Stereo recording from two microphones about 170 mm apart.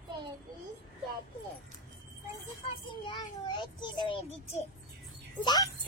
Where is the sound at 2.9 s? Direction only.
30° left (ahead or behind).